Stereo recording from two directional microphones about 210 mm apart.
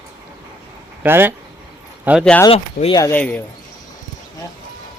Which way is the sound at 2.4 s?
25° left (ahead or behind).